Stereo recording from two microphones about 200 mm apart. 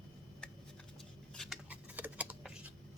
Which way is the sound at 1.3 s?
Centre (ahead or behind).